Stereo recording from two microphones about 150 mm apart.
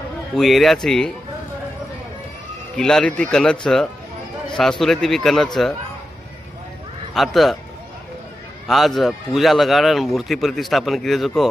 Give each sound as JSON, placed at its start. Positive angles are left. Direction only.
{"t": 0.4, "sound": "a man's voice", "side_deg": 0}
{"t": 2.8, "sound": "a man's voice", "side_deg": 5}
{"t": 7.2, "sound": "a man's voice", "side_deg": 0}
{"t": 8.6, "sound": "a man's voice", "side_deg": 0}